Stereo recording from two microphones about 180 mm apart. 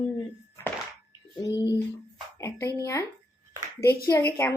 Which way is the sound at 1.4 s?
20° left (ahead or behind).